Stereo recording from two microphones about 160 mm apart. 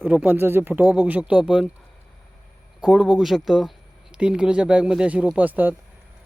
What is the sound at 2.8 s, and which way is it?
Speech, 5° right (ahead or behind).